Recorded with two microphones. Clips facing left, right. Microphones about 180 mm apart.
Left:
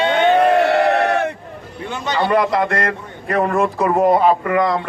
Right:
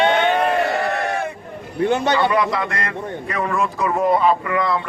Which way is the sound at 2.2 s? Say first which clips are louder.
Left 3 dB; 50° left (ahead or behind).